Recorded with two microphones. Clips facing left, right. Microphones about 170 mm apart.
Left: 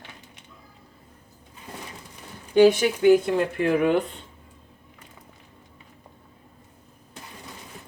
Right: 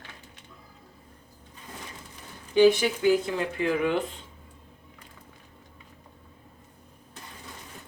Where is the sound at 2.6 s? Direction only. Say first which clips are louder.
Left 3 dB; 60° left (ahead or behind).